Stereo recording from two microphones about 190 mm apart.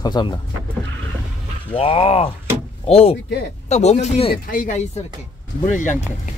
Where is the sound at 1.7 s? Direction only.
30° left (ahead or behind).